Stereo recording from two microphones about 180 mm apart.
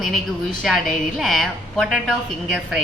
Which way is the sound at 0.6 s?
Centre (ahead or behind).